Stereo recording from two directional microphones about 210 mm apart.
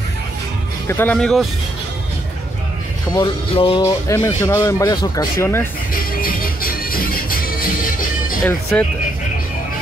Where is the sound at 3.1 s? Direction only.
25° left (ahead or behind).